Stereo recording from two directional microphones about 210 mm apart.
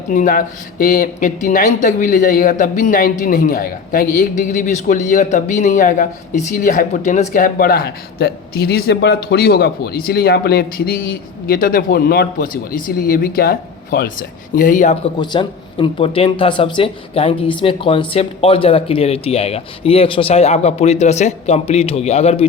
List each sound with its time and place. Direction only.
0.1 s speech: 40° left (ahead or behind)
15.2 s speech: 20° left (ahead or behind)